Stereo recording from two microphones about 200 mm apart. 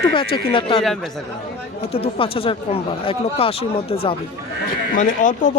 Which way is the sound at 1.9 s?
30° left (ahead or behind).